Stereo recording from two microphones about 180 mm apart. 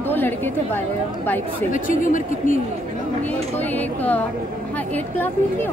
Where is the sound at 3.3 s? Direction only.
10° left (ahead or behind).